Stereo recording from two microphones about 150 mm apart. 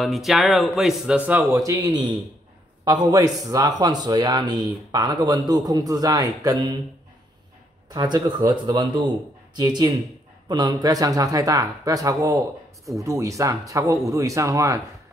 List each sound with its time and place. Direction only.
0.0 s a man's voice: centre (ahead or behind)
1.5 s a man's voice: 20° right (ahead or behind)
7.9 s speech: 30° right (ahead or behind)